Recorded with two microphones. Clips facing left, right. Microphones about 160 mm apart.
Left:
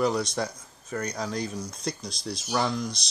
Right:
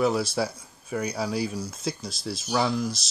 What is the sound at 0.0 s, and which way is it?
Speech, 5° right (ahead or behind).